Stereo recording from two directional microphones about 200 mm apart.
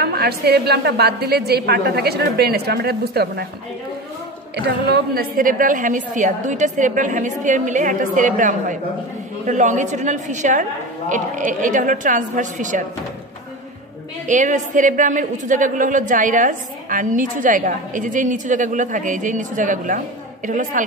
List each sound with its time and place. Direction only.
0.0 s a woman's voice: 50° right (ahead or behind)
4.6 s a woman's voice: 55° right (ahead or behind); by 12.8 s 40° right (ahead or behind)
14.2 s a woman's voice: 40° right (ahead or behind)